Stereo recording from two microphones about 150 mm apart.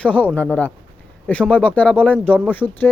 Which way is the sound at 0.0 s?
10° left (ahead or behind).